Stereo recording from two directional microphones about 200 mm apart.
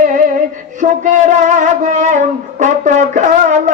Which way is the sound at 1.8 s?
40° right (ahead or behind).